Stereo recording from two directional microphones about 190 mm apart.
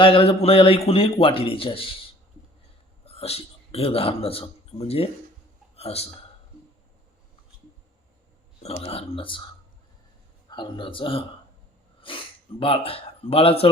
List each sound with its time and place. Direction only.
0.0 s a man's voice: 30° left (ahead or behind)
3.0 s a man's voice: 30° left (ahead or behind)
8.8 s a man's voice: 30° left (ahead or behind)
10.5 s a man's voice: 25° left (ahead or behind)